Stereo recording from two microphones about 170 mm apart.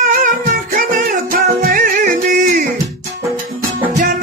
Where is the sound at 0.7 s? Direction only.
55° right (ahead or behind).